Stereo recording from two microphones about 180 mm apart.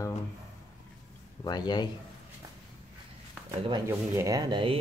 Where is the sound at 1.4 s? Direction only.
20° left (ahead or behind).